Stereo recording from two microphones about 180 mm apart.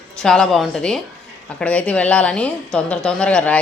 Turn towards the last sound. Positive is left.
turn(degrees=5)  # may be behind; listen again after turning